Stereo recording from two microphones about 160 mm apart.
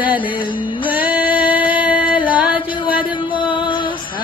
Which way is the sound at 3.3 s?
30° left (ahead or behind).